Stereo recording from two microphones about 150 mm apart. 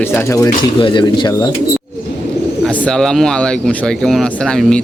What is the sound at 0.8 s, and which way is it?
Speech, 35° left (ahead or behind).